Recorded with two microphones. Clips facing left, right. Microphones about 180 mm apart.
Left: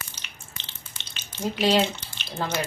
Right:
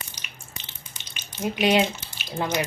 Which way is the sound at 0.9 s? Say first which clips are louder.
Right 1 dB; 15° right (ahead or behind).